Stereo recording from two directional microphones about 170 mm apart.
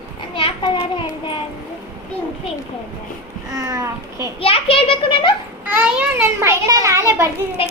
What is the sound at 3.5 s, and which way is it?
Speech, 20° right (ahead or behind).